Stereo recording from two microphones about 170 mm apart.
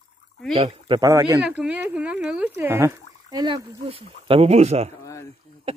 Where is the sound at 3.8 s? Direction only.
35° right (ahead or behind).